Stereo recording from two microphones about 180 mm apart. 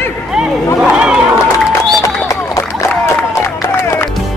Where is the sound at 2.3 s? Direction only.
15° left (ahead or behind).